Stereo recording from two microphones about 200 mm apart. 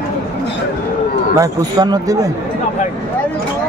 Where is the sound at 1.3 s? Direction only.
20° right (ahead or behind).